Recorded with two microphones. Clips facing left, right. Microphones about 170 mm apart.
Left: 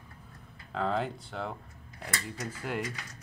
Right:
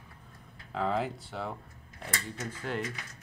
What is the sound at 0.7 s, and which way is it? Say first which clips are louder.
Speech: even; centre (ahead or behind).